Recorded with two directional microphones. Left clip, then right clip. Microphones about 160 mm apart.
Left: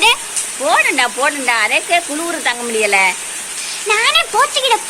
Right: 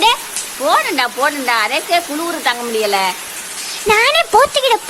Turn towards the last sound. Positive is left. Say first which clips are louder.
# right 2 dB
turn(degrees=-50)  # may be behind; listen again after turning